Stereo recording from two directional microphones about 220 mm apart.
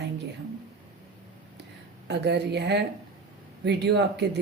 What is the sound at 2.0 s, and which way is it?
Speech, 50° right (ahead or behind).